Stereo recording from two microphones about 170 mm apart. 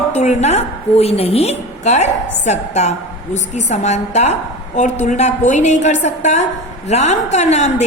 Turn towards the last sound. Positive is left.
turn(degrees=40)  # may be behind; listen again after turning